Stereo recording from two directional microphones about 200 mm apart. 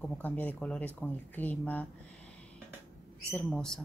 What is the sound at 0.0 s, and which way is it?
Speech, 10° left (ahead or behind).